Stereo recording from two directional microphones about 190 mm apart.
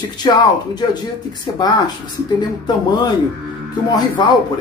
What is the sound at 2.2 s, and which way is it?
Speech, 20° left (ahead or behind).